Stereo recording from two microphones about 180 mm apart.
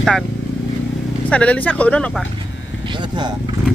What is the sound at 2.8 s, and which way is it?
Vehicle, 25° right (ahead or behind).